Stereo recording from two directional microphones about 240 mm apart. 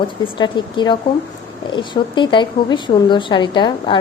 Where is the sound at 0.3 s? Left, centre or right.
Centre.